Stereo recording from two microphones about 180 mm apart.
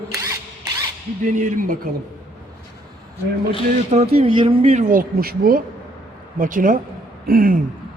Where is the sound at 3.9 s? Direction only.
35° right (ahead or behind); by 5.6 s 55° right (ahead or behind).